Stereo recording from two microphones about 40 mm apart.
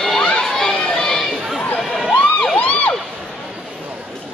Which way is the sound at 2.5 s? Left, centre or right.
Left.